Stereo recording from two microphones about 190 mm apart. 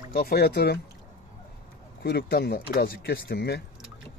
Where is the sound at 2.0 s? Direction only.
60° left (ahead or behind).